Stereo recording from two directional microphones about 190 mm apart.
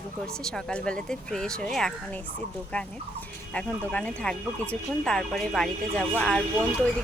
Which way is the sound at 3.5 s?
5° left (ahead or behind).